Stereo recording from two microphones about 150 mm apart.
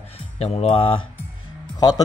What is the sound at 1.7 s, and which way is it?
Speech, 25° left (ahead or behind).